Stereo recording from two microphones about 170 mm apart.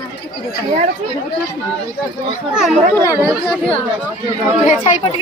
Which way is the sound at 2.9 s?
15° left (ahead or behind).